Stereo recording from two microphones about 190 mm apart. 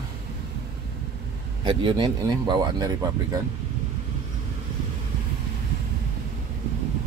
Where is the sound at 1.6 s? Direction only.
25° right (ahead or behind).